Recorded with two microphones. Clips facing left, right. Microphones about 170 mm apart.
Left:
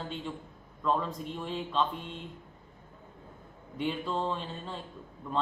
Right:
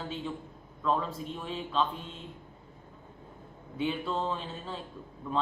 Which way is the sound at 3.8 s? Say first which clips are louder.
Right 1 dB; centre (ahead or behind).